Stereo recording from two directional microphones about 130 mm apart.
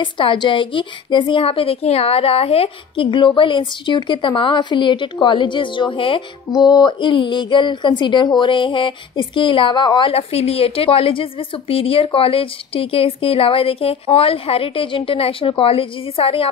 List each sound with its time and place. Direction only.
0.0 s a woman's voice: 40° left (ahead or behind)
6.5 s a woman's voice: 30° left (ahead or behind)